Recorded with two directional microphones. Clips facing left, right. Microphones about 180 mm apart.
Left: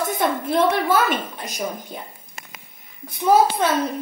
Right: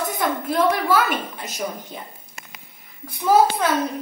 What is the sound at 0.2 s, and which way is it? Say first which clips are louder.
A woman's voice: left 1 dB; 25° left (ahead or behind).